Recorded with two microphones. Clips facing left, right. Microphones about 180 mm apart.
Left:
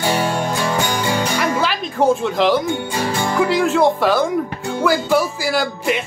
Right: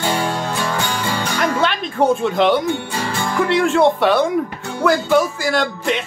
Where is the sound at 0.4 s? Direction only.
15° left (ahead or behind).